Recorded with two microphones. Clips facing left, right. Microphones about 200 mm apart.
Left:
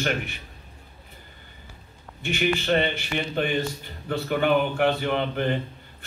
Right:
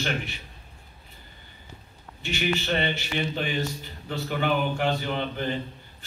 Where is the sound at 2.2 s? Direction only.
50° left (ahead or behind).